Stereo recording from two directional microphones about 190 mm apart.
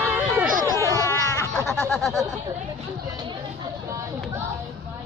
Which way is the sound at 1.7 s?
5° left (ahead or behind).